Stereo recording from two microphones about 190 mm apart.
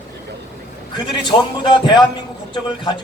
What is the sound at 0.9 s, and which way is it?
Speech, 25° left (ahead or behind).